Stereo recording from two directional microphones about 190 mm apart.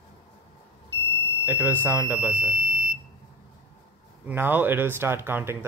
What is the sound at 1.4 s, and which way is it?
Speech, 10° right (ahead or behind).